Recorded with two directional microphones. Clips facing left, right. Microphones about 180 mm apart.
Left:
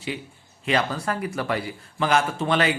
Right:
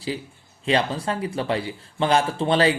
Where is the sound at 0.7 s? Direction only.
30° right (ahead or behind).